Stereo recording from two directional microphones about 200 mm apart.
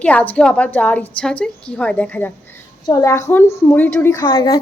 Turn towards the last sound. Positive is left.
turn(degrees=20)  # may be behind; listen again after turning